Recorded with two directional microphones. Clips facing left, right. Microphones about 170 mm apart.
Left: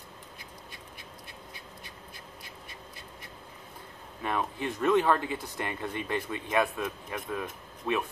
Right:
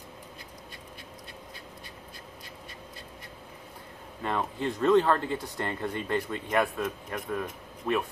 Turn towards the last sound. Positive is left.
turn(degrees=-5)  # may be behind; listen again after turning